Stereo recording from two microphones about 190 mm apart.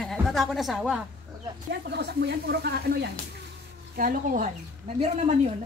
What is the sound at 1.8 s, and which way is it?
Speech, 60° right (ahead or behind).